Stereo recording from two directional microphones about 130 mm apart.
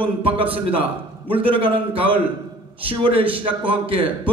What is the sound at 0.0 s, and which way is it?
A man's voice, 45° right (ahead or behind).